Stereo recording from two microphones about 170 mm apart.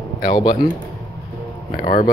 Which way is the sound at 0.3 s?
25° left (ahead or behind).